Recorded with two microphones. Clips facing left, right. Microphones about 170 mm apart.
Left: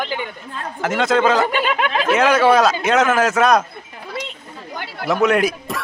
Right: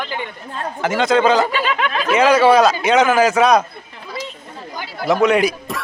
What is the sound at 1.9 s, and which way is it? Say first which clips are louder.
Speech: left 1 dB; 25° left (ahead or behind).